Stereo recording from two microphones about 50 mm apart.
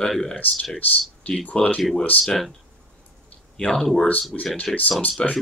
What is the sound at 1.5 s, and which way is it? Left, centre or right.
Speech, left.